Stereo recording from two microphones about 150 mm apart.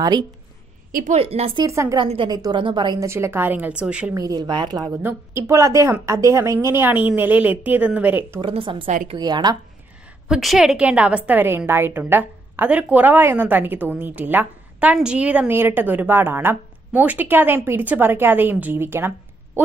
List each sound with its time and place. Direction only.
1.1 s speech: 40° right (ahead or behind)
1.6 s a woman's voice: 20° right (ahead or behind)
2.0 s a woman's voice: 35° right (ahead or behind)
3.1 s a woman's voice: 15° right (ahead or behind)
4.1 s a woman's voice: 25° right (ahead or behind)
8.4 s speech: 35° right (ahead or behind)
8.8 s a woman's voice: 55° right (ahead or behind)
9.1 s a woman's voice: 25° right (ahead or behind)
10.2 s a woman's voice: centre (ahead or behind)